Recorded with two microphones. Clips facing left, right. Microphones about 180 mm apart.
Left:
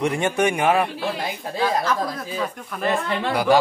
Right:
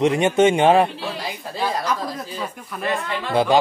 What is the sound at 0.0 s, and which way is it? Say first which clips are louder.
Speech: right 5 dB; 20° right (ahead or behind).